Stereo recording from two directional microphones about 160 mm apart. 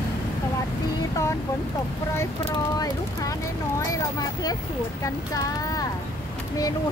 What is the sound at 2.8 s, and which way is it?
Speech, 20° left (ahead or behind).